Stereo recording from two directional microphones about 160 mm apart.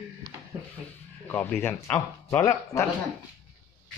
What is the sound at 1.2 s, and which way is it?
Speech, 10° left (ahead or behind).